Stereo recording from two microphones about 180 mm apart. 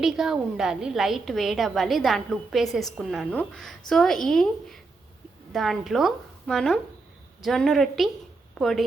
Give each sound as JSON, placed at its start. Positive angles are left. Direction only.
{"t": 0.0, "sound": "a woman's voice", "side_deg": 0}